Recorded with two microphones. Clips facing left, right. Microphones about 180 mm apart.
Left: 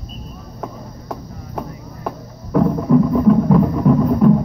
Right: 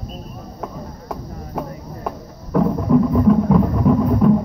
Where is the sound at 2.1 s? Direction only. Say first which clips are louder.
Left 1 dB; centre (ahead or behind).